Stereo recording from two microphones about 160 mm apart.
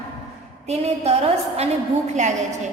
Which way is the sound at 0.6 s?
40° right (ahead or behind).